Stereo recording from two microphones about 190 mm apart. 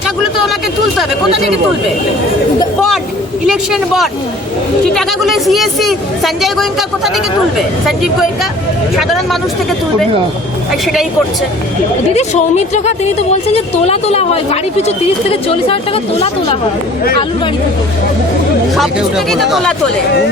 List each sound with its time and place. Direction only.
3.4 s a woman's voice: centre (ahead or behind)
12.1 s a woman's voice: 35° left (ahead or behind)
18.8 s a woman's voice: centre (ahead or behind)